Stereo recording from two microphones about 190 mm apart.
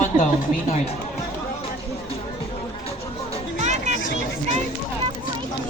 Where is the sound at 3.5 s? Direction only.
40° right (ahead or behind).